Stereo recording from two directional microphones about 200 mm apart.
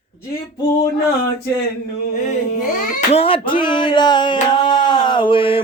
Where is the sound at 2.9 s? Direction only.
35° left (ahead or behind).